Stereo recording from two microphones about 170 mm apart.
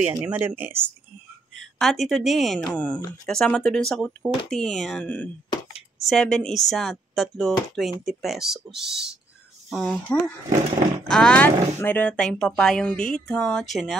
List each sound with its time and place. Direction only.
0.1 s speech: 10° right (ahead or behind)
1.8 s speech: centre (ahead or behind)
5.5 s a sound: 35° left (ahead or behind)
6.0 s speech: 5° left (ahead or behind)